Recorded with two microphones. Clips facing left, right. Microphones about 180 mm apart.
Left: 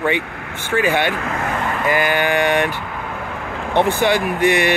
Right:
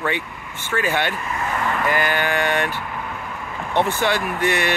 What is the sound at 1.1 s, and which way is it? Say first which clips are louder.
Speech: left 4 dB; 90° left.